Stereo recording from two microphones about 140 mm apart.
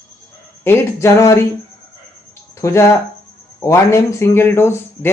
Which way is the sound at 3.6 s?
20° left (ahead or behind).